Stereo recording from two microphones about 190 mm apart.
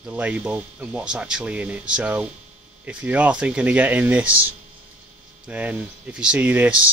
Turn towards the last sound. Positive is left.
turn(degrees=-10)  # may be behind; listen again after turning